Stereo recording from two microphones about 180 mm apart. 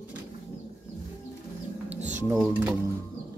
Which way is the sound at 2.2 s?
15° right (ahead or behind).